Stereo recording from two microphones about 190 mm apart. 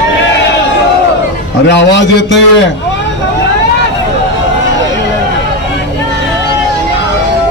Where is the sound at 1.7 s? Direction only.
70° left (ahead or behind).